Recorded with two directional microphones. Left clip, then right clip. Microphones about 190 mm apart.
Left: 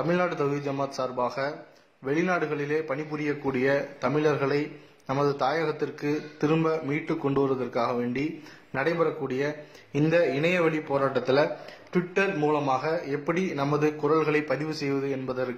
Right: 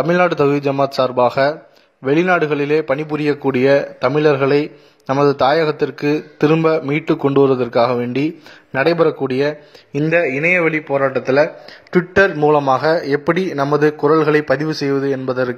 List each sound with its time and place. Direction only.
0.1 s a man's voice: 40° right (ahead or behind)